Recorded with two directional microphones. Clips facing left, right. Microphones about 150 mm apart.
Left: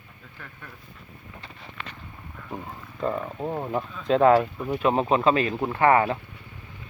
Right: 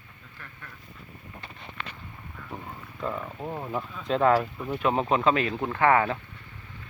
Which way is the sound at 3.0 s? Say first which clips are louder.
Left 5 dB; 20° left (ahead or behind).